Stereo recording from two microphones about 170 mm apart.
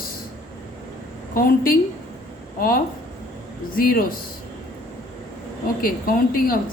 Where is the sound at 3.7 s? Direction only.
55° left (ahead or behind).